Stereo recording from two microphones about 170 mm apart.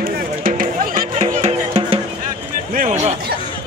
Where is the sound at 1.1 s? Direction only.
40° right (ahead or behind).